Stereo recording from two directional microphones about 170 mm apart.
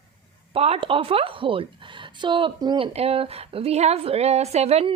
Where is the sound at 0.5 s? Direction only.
35° right (ahead or behind).